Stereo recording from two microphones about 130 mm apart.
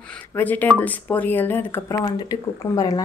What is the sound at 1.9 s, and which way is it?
Speech, 30° left (ahead or behind).